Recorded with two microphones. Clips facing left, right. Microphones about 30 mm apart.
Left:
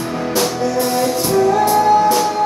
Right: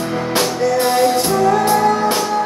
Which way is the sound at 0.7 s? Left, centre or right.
Right.